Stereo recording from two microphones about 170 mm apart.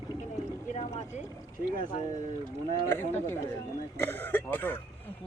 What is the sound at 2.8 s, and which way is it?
Speech, 15° left (ahead or behind).